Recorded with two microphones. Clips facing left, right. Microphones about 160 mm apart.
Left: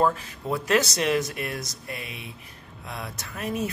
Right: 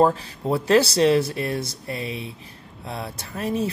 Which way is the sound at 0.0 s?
30° right (ahead or behind).